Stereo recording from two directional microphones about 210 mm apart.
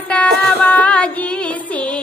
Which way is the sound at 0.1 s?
5° left (ahead or behind).